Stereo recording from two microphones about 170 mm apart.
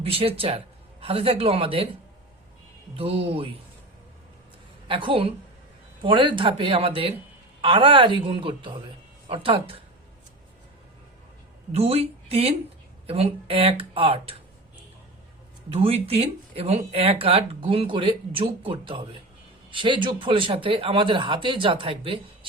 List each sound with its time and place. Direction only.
0.0 s speech: 35° right (ahead or behind)
2.9 s speech: 35° right (ahead or behind)
4.9 s speech: 30° right (ahead or behind)
11.7 s speech: 35° right (ahead or behind)
15.7 s speech: 35° right (ahead or behind)